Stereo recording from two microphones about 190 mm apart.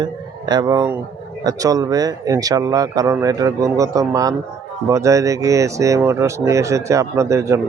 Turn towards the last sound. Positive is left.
turn(degrees=-15)  # may be behind; listen again after turning